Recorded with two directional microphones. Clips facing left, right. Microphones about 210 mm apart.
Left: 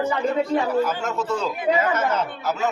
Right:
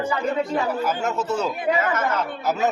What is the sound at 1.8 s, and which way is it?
Speech, 25° left (ahead or behind).